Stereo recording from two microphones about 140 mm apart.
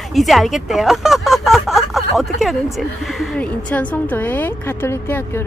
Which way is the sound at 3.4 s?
10° left (ahead or behind).